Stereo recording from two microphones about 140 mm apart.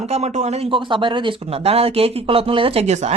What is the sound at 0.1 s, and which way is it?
Speech, 50° right (ahead or behind).